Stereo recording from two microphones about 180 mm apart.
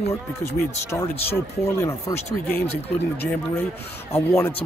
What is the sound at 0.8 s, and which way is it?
Speech, 15° left (ahead or behind).